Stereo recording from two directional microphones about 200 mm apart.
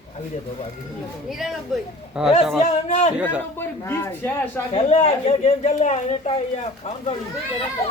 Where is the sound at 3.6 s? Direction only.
10° left (ahead or behind).